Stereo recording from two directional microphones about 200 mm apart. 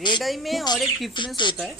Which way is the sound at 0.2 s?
Centre (ahead or behind).